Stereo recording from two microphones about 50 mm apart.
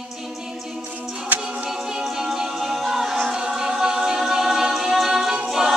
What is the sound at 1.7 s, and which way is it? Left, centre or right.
Music, centre.